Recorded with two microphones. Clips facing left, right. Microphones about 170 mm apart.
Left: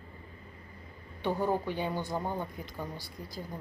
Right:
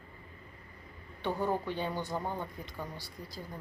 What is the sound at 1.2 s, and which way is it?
A woman's voice, 10° left (ahead or behind).